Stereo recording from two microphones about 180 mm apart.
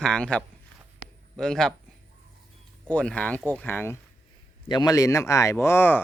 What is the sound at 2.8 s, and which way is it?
Speech, 5° left (ahead or behind).